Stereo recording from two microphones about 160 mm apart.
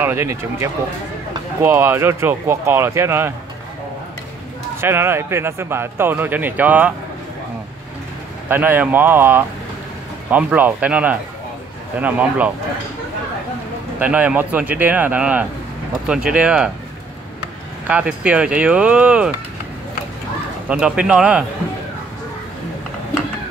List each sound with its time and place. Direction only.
0.0 s speech: 15° right (ahead or behind)
4.7 s speech: 15° right (ahead or behind)
8.5 s speech: 10° right (ahead or behind)
13.9 s speech: 10° right (ahead or behind)
17.8 s speech: 10° right (ahead or behind)
20.6 s speech: 5° right (ahead or behind)